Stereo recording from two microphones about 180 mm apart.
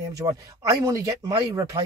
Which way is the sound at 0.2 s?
20° right (ahead or behind).